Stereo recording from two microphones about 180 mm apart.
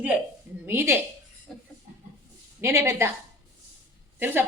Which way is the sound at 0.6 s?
10° right (ahead or behind).